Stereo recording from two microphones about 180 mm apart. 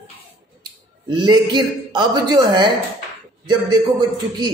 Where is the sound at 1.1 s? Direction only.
25° right (ahead or behind).